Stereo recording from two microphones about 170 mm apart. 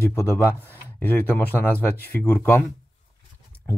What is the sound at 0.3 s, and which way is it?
Speech, 15° left (ahead or behind).